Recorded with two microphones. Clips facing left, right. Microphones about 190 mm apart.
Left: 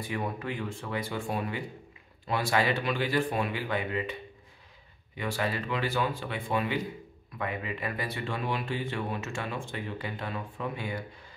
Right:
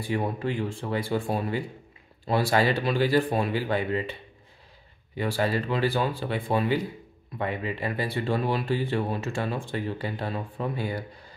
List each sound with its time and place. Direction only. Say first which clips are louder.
0.0 s speech: right 5 dB; 30° right (ahead or behind)